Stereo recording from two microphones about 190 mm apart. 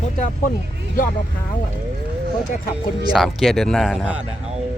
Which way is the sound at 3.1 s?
Centre (ahead or behind).